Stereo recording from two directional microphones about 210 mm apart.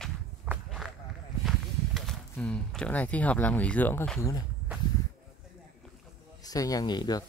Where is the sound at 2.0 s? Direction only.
5° left (ahead or behind).